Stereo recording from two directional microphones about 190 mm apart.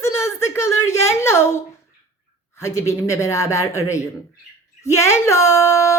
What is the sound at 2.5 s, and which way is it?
Speech, 15° left (ahead or behind).